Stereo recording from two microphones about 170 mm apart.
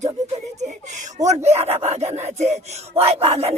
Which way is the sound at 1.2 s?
40° right (ahead or behind).